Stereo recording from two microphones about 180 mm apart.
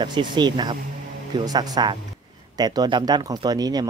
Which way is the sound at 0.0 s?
25° right (ahead or behind).